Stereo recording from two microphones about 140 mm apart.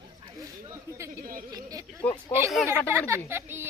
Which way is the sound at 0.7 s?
20° right (ahead or behind).